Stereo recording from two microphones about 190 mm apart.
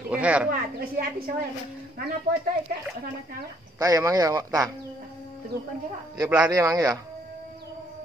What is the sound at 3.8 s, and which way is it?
Speech, 15° right (ahead or behind).